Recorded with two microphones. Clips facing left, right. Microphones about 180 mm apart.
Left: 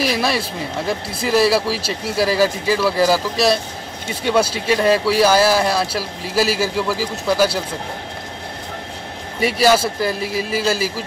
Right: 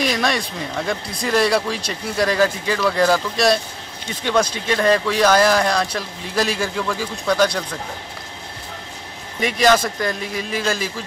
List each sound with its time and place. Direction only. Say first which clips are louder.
0.0 s speech: left 1 dB; 5° left (ahead or behind)
9.4 s speech: left 1 dB; 5° left (ahead or behind)